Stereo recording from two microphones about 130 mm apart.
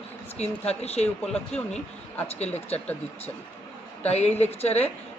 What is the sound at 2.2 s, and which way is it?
Speech, 55° left (ahead or behind).